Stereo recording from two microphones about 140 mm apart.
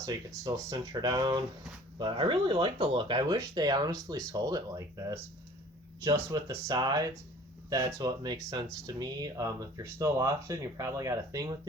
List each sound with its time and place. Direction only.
0.0 s speech: 25° right (ahead or behind)